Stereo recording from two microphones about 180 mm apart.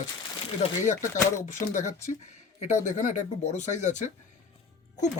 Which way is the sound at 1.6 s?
40° left (ahead or behind).